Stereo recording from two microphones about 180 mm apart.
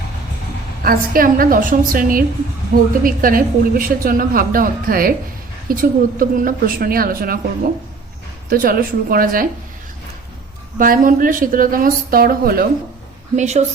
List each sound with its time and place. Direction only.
0.9 s a woman's voice: 50° right (ahead or behind)
8.4 s a woman's voice: 55° right (ahead or behind)
10.8 s a woman's voice: 50° right (ahead or behind)
13.3 s a woman's voice: 40° right (ahead or behind)